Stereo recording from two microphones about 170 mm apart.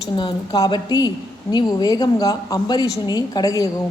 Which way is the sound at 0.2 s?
25° left (ahead or behind).